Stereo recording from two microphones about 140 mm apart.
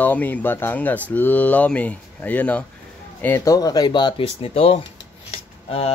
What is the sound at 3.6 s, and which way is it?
Speech, 25° left (ahead or behind).